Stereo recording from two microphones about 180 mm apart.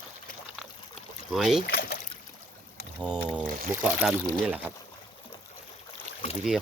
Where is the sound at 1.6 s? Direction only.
60° left (ahead or behind).